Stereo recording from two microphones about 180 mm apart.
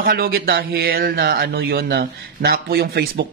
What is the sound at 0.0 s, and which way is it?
A man's voice, 55° right (ahead or behind).